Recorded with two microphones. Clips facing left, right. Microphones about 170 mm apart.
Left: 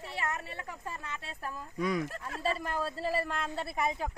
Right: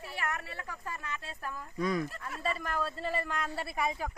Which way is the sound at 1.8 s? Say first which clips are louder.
Even; 10° left (ahead or behind).